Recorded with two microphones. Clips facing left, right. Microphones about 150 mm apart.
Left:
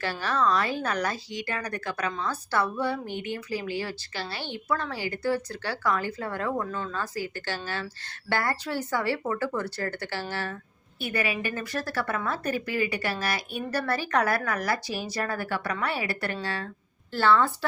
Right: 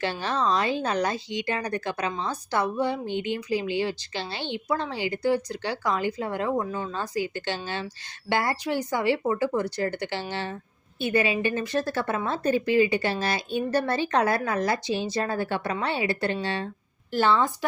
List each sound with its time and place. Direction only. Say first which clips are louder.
0.0 s a woman's voice: even; 20° right (ahead or behind)